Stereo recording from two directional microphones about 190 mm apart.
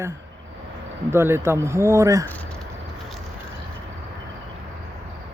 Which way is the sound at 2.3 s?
5° left (ahead or behind).